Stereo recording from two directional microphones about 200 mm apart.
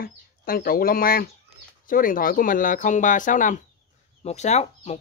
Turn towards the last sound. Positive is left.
turn(degrees=35)  # may be behind; listen again after turning